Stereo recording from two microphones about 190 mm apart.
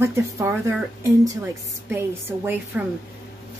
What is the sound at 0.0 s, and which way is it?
A man's voice, 15° right (ahead or behind).